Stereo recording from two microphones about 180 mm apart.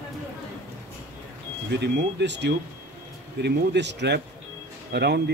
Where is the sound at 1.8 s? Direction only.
70° right (ahead or behind).